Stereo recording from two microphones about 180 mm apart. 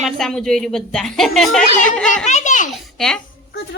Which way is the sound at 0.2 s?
Centre (ahead or behind).